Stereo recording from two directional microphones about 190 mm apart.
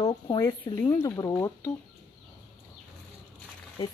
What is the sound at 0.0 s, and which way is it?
Speech, 20° left (ahead or behind).